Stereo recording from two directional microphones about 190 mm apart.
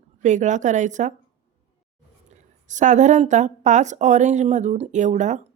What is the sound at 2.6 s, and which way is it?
A woman's voice, 40° right (ahead or behind).